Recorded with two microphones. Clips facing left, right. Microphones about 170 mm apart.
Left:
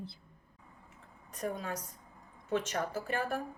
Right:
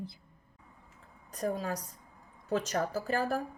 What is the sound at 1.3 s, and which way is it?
A woman's voice, 35° right (ahead or behind).